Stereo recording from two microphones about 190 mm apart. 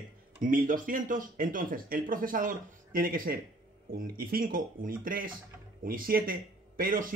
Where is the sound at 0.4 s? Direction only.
45° right (ahead or behind).